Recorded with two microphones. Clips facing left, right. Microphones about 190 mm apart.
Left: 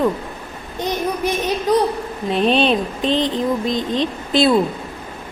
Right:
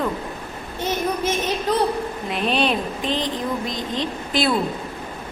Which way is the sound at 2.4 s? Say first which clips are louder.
Left 4 dB; 25° left (ahead or behind).